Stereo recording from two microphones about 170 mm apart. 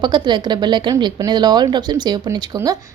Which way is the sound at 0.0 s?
25° right (ahead or behind).